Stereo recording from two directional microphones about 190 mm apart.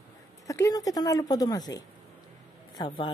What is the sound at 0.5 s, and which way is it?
Speech, 15° left (ahead or behind).